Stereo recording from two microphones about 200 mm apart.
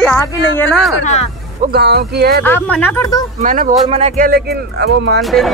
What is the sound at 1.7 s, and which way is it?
Speech, 55° right (ahead or behind).